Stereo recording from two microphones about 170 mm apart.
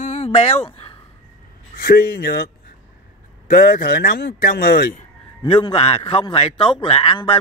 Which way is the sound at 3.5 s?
55° left (ahead or behind).